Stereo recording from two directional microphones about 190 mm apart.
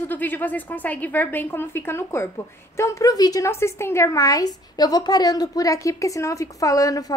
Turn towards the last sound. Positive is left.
turn(degrees=20)  # may be behind; listen again after turning